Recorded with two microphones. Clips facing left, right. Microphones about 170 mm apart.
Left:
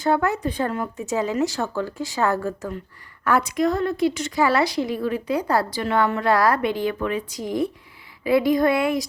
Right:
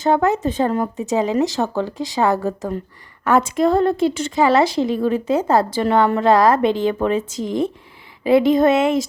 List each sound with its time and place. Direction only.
0.0 s a woman's voice: 20° right (ahead or behind)